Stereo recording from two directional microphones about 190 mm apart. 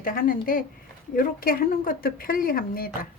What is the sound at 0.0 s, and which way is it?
Speech, 50° left (ahead or behind).